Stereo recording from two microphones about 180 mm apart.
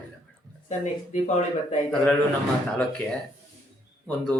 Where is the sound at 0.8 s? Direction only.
40° left (ahead or behind).